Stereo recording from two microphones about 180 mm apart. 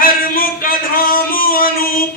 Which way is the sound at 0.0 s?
50° left (ahead or behind).